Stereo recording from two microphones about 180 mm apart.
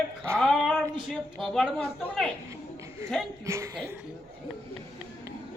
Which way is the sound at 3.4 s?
15° right (ahead or behind).